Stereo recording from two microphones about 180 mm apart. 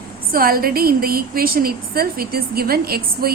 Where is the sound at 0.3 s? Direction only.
55° right (ahead or behind).